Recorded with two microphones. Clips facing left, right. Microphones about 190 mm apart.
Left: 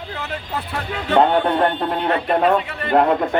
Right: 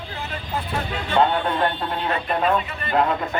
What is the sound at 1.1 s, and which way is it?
Speech, 65° left (ahead or behind).